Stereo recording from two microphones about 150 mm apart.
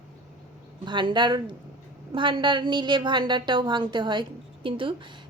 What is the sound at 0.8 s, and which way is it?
A woman's voice, 30° right (ahead or behind).